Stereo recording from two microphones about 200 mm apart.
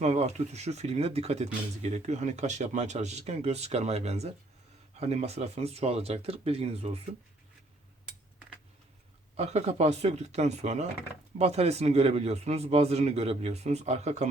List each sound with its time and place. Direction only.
0.0 s speech: 35° right (ahead or behind)
9.3 s speech: 35° right (ahead or behind)